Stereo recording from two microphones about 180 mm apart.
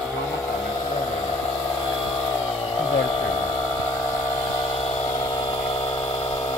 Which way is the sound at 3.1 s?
30° left (ahead or behind).